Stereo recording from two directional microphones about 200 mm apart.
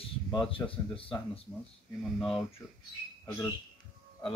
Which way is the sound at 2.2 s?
Centre (ahead or behind).